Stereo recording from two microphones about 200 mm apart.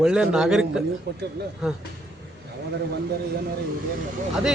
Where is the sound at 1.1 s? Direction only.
55° right (ahead or behind).